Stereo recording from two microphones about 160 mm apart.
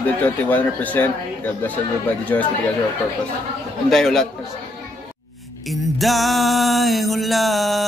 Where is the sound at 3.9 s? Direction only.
Centre (ahead or behind).